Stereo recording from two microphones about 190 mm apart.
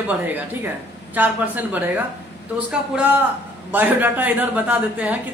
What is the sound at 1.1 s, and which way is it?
Speech, 10° right (ahead or behind).